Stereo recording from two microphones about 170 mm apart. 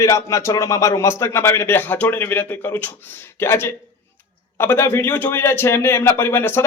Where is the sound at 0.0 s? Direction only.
20° left (ahead or behind).